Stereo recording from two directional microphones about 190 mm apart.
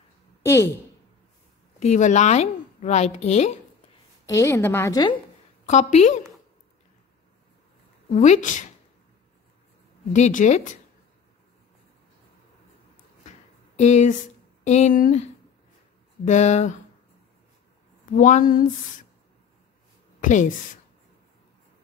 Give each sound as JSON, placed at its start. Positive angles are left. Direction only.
{"t": 0.4, "sound": "a woman's voice", "side_deg": 15}
{"t": 1.8, "sound": "a woman's voice", "side_deg": 40}
{"t": 4.3, "sound": "a woman's voice", "side_deg": 15}
{"t": 5.7, "sound": "a woman's voice", "side_deg": 35}
{"t": 8.1, "sound": "a woman's voice", "side_deg": 40}
{"t": 10.1, "sound": "a woman's voice", "side_deg": 40}
{"t": 13.7, "sound": "a woman's voice", "side_deg": 35}
{"t": 16.3, "sound": "a woman's voice", "side_deg": 40}
{"t": 18.1, "sound": "speech", "side_deg": 40}
{"t": 20.2, "sound": "speech", "side_deg": 40}